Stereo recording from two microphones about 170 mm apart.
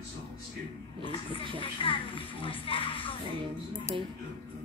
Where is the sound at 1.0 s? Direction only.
30° left (ahead or behind).